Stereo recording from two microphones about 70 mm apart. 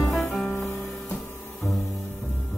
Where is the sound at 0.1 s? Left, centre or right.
Centre.